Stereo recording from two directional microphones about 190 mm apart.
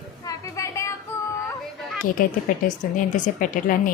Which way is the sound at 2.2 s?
50° left (ahead or behind).